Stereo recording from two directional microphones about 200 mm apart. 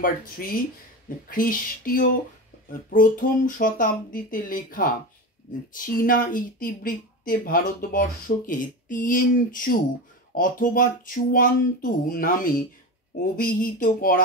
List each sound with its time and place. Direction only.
0.0 s speech: 45° left (ahead or behind)
5.9 s speech: 45° left (ahead or behind)